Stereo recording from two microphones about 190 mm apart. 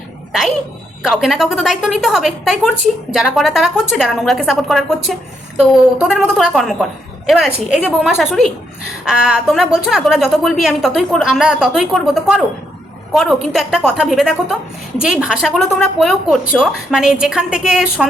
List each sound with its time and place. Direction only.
1.0 s a woman's voice: centre (ahead or behind)